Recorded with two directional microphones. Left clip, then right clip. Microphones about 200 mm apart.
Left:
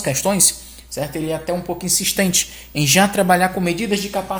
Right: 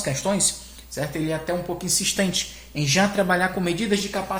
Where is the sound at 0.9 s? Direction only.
30° left (ahead or behind).